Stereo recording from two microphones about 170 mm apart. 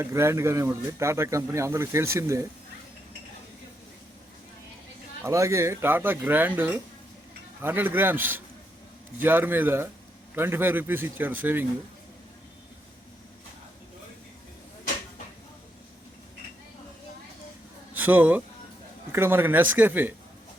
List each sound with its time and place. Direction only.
0.0 s speech: 15° right (ahead or behind)
5.2 s speech: 15° right (ahead or behind)
17.9 s speech: 10° right (ahead or behind)